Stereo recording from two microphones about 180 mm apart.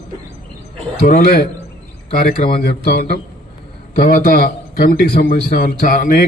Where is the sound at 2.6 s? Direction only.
60° left (ahead or behind).